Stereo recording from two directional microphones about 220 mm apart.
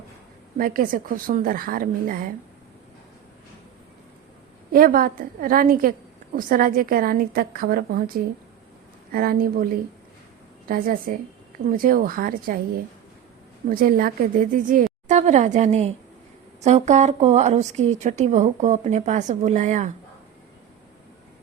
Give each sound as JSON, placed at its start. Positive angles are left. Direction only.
{"t": 0.5, "sound": "speech", "side_deg": -40}
{"t": 4.7, "sound": "speech", "side_deg": -40}
{"t": 10.7, "sound": "speech", "side_deg": -40}
{"t": 13.7, "sound": "speech", "side_deg": -40}